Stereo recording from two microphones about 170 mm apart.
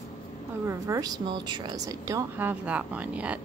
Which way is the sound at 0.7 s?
20° right (ahead or behind).